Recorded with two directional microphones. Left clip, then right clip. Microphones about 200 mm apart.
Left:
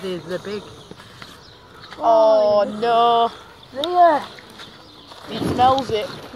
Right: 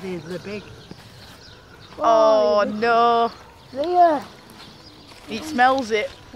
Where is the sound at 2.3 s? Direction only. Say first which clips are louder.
Left 2 dB; 25° right (ahead or behind).